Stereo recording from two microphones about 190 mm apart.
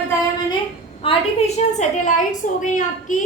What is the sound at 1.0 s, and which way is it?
A woman's voice, 30° left (ahead or behind).